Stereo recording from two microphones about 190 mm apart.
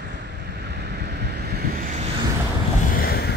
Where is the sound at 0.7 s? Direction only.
65° right (ahead or behind); by 2.1 s 45° right (ahead or behind).